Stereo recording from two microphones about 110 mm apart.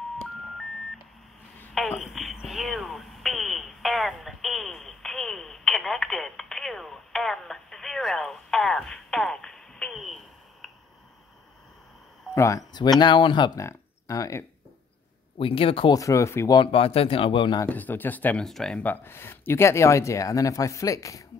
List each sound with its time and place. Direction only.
2.0 s a sound: centre (ahead or behind)
12.4 s speech: 30° left (ahead or behind)
13.6 s speech: 30° left (ahead or behind)
15.3 s speech: 55° left (ahead or behind)
15.9 s speech: 30° left (ahead or behind)
16.7 s speech: 60° left (ahead or behind)
17.6 s speech: 15° left (ahead or behind)
18.4 s speech: 5° left (ahead or behind); by 21.2 s 30° left (ahead or behind)